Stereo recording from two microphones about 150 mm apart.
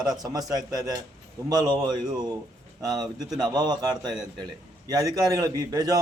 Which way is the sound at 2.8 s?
25° right (ahead or behind).